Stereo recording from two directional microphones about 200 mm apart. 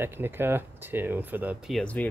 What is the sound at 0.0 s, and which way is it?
Speech, 10° right (ahead or behind).